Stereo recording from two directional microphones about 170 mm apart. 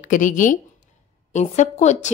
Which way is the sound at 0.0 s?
50° left (ahead or behind).